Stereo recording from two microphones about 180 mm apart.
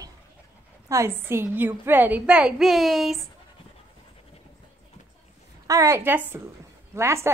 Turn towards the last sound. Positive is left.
turn(degrees=-15)  # may be behind; listen again after turning